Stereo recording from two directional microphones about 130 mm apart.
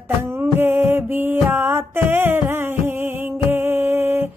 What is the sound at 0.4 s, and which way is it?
Music, 15° right (ahead or behind).